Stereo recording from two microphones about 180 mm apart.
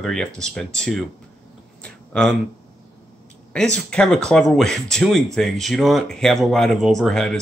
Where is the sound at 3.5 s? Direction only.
5° left (ahead or behind).